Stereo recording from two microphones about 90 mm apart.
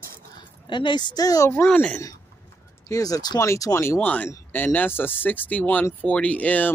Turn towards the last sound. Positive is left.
turn(degrees=15)  # may be behind; listen again after turning